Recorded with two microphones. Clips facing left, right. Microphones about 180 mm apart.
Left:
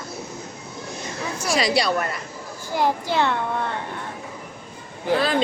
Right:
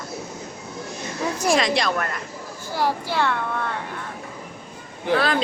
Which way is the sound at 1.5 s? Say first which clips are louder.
Left 1 dB; 5° left (ahead or behind).